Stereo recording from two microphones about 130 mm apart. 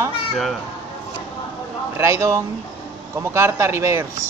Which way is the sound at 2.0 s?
20° right (ahead or behind).